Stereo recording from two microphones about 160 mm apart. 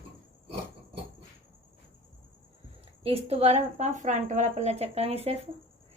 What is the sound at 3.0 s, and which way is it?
A woman's voice, 40° right (ahead or behind).